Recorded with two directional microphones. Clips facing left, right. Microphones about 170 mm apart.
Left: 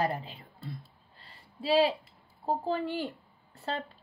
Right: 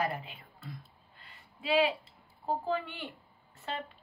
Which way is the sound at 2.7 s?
35° left (ahead or behind).